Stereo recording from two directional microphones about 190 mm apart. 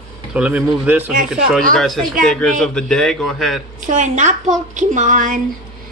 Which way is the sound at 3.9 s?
40° right (ahead or behind).